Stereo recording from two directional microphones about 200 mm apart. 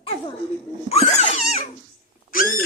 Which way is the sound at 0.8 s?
30° left (ahead or behind).